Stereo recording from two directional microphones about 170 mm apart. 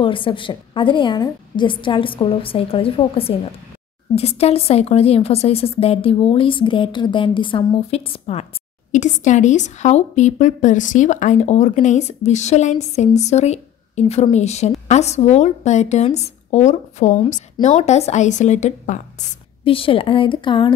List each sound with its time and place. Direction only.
0.0 s a woman's voice: 30° left (ahead or behind)